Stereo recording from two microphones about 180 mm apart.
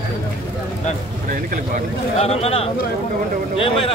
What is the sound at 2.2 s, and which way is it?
Speech, 35° left (ahead or behind).